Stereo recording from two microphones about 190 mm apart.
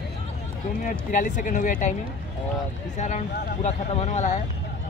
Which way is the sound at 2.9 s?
40° left (ahead or behind).